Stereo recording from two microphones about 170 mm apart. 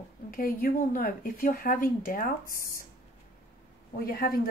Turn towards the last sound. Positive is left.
turn(degrees=60)  # may be behind; listen again after turning